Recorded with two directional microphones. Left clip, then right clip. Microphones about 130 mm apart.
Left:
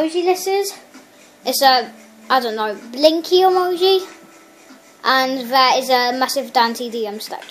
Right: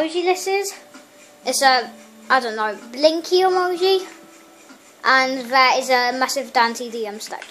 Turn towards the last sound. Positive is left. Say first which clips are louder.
# left 3 dB
turn(degrees=15)  # may be behind; listen again after turning